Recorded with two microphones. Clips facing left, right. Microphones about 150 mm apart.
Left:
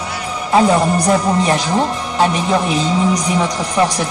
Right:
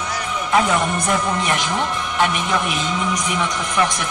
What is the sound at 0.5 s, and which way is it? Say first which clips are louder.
A man's voice: left 6 dB; 30° left (ahead or behind).